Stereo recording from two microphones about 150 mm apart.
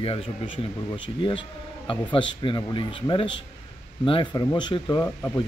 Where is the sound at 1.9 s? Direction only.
35° left (ahead or behind).